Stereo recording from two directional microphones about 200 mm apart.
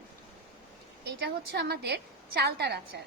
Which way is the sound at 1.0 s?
55° right (ahead or behind).